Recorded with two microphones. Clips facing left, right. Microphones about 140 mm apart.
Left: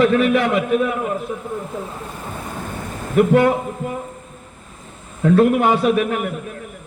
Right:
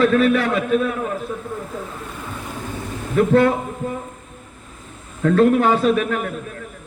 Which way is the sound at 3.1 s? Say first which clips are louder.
Left 1 dB; 15° left (ahead or behind).